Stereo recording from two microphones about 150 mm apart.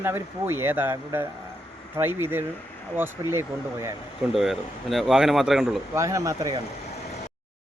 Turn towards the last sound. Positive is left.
turn(degrees=-20)  # may be behind; listen again after turning